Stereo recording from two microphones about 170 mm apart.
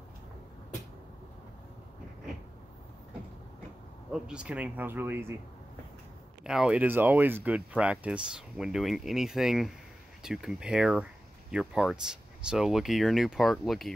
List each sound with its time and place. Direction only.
4.1 s speech: 5° right (ahead or behind)
6.4 s speech: 5° right (ahead or behind)